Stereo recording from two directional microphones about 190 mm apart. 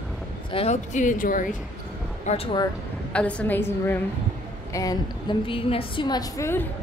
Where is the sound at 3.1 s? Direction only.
5° left (ahead or behind).